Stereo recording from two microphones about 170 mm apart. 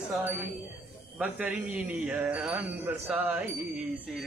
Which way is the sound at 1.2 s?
10° right (ahead or behind).